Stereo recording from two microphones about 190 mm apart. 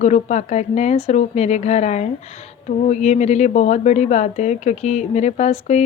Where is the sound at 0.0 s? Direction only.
40° left (ahead or behind).